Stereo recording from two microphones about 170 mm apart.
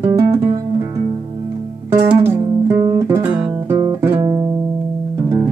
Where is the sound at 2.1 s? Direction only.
10° right (ahead or behind).